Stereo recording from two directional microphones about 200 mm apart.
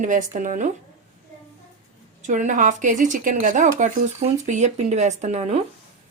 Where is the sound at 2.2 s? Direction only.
40° right (ahead or behind).